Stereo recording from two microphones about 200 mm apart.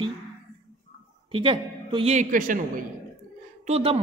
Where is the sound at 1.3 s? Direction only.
25° right (ahead or behind); by 2.6 s 40° right (ahead or behind).